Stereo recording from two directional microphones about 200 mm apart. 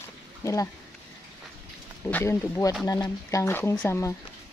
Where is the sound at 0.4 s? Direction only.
15° left (ahead or behind).